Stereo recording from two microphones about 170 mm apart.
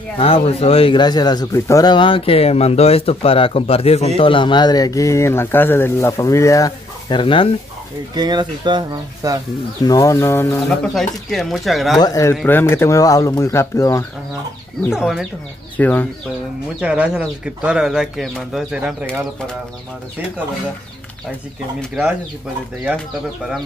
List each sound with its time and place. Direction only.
0.2 s speech: 35° left (ahead or behind)
8.1 s speech: 25° right (ahead or behind)
9.8 s speech: 20° left (ahead or behind)
11.2 s speech: centre (ahead or behind)
12.0 s speech: 20° left (ahead or behind)
14.9 s speech: 5° right (ahead or behind)
15.8 s speech: 10° left (ahead or behind)
16.8 s speech: 5° right (ahead or behind)
22.9 s speech: centre (ahead or behind)